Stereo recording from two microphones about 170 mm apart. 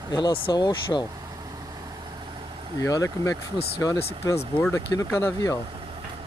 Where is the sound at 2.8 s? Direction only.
20° left (ahead or behind).